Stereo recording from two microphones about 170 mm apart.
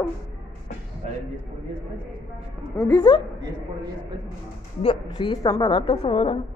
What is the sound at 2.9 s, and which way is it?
Speech, 25° left (ahead or behind).